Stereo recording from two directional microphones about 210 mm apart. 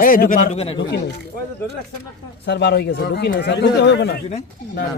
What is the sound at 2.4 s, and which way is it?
A man's voice, 55° left (ahead or behind).